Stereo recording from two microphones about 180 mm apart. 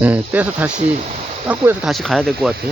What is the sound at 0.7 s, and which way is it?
Speech, 40° right (ahead or behind).